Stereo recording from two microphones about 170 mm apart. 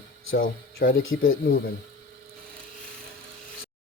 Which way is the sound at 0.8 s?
55° left (ahead or behind).